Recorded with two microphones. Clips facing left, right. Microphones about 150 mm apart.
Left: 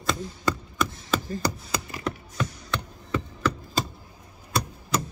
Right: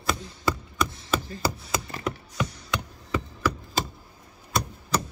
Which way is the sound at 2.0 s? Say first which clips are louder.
Even; 10° right (ahead or behind).